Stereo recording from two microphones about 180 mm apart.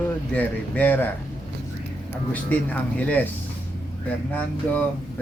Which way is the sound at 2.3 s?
10° left (ahead or behind).